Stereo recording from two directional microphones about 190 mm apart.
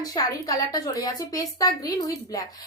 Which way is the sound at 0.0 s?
20° left (ahead or behind).